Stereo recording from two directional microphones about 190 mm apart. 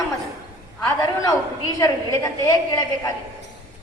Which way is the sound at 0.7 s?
15° left (ahead or behind).